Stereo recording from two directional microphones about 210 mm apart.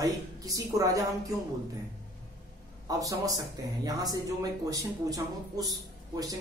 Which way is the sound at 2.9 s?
15° right (ahead or behind).